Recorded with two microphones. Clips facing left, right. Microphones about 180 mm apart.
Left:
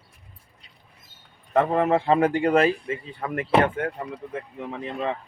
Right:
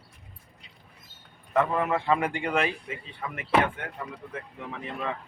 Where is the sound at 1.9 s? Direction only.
35° left (ahead or behind).